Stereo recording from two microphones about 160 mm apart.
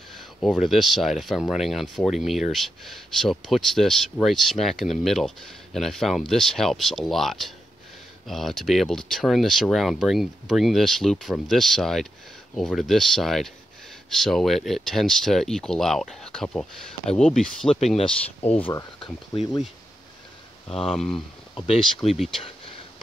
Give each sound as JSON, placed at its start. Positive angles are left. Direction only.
{"t": 0.4, "sound": "speech", "side_deg": 0}
{"t": 17.7, "sound": "speech", "side_deg": 40}
{"t": 20.6, "sound": "speech", "side_deg": 35}
{"t": 20.9, "sound": "speech", "side_deg": 5}
{"t": 21.5, "sound": "speech", "side_deg": 40}